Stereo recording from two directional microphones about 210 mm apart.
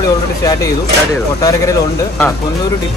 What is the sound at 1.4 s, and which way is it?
Speech, 15° left (ahead or behind).